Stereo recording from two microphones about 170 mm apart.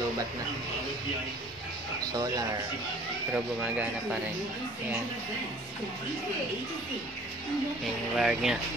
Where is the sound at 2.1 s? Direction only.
20° right (ahead or behind).